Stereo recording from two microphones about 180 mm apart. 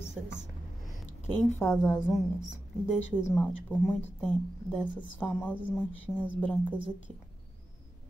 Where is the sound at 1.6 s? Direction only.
5° right (ahead or behind).